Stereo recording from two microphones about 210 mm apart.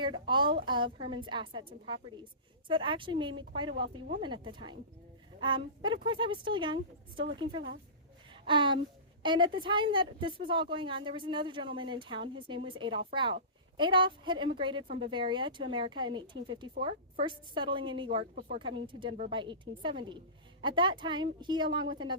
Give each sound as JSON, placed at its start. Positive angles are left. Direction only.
{"t": 0.0, "sound": "a woman's voice", "side_deg": -20}
{"t": 8.3, "sound": "a sound", "side_deg": -25}
{"t": 9.2, "sound": "a woman's voice", "side_deg": -20}
{"t": 18.2, "sound": "speech", "side_deg": -40}
{"t": 18.6, "sound": "a woman's voice", "side_deg": -25}